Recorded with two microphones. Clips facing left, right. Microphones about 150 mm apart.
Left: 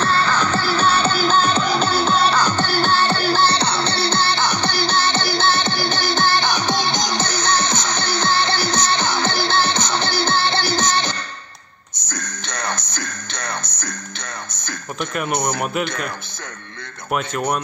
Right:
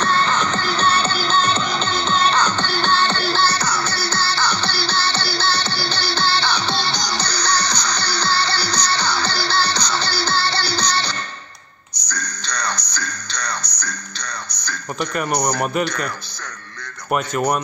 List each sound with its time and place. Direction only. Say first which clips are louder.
0.0 s music: even; 5° left (ahead or behind)
3.4 s music: left 2 dB; 25° left (ahead or behind)
12.4 s music: even; 20° left (ahead or behind)
13.6 s music: left 1 dB; 50° left (ahead or behind)
15.1 s speech: right 1 dB; 5° left (ahead or behind)
17.1 s speech: right 2 dB; centre (ahead or behind)